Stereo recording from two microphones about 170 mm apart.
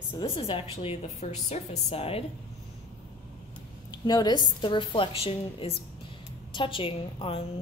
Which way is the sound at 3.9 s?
25° left (ahead or behind).